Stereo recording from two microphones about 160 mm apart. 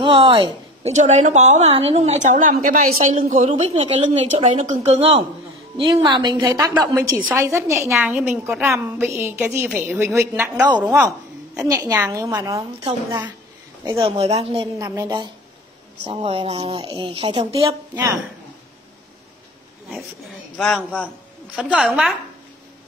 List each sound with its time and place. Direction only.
0.0 s a woman's voice: 30° right (ahead or behind)
0.9 s a woman's voice: 45° right (ahead or behind)
5.8 s a woman's voice: 30° right (ahead or behind); by 11.1 s 10° right (ahead or behind)
12.1 s a woman's voice: 20° right (ahead or behind)
13.8 s a woman's voice: 35° right (ahead or behind)
14.8 s a woman's voice: 25° right (ahead or behind)
16.1 s a woman's voice: 35° right (ahead or behind)
16.8 s a woman's voice: 25° right (ahead or behind)
17.1 s a woman's voice: 35° right (ahead or behind)
20.5 s a man's voice: centre (ahead or behind)